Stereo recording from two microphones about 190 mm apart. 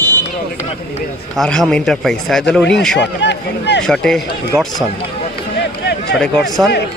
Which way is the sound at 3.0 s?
65° left (ahead or behind).